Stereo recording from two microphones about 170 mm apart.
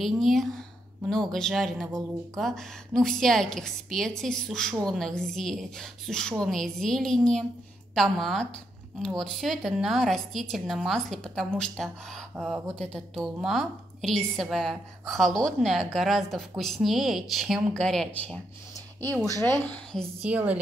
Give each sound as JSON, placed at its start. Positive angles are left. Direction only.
{"t": 0.0, "sound": "a woman's voice", "side_deg": 0}
{"t": 18.9, "sound": "speech", "side_deg": -20}
{"t": 19.4, "sound": "a woman's voice", "side_deg": 10}
{"t": 20.2, "sound": "a woman's voice", "side_deg": -10}